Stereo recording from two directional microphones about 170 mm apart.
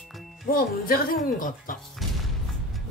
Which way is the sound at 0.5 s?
60° left (ahead or behind).